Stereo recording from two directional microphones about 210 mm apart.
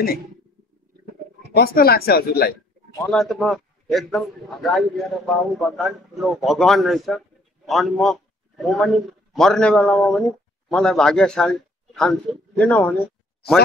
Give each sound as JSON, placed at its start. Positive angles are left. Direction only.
{"t": 1.5, "sound": "speech", "side_deg": 45}
{"t": 3.1, "sound": "a man's voice", "side_deg": 0}